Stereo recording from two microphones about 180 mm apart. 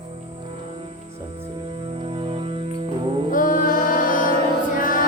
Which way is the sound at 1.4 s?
30° right (ahead or behind).